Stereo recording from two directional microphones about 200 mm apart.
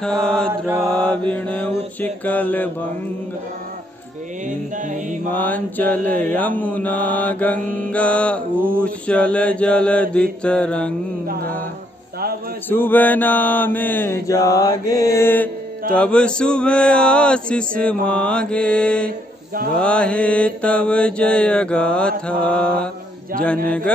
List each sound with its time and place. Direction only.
0.0 s mantra: 5° left (ahead or behind)
0.5 s mantra: 10° right (ahead or behind)
0.8 s mantra: 5° left (ahead or behind)
4.5 s music: 40° right (ahead or behind)
5.3 s mantra: 10° left (ahead or behind)
7.5 s mantra: 45° right (ahead or behind)
7.9 s mantra: 5° left (ahead or behind)
8.5 s mantra: 10° right (ahead or behind)
8.8 s mantra: 5° left (ahead or behind)
12.6 s mantra: 10° left (ahead or behind)
19.0 s a sound: 45° right (ahead or behind)
19.8 s mantra: 5° left (ahead or behind)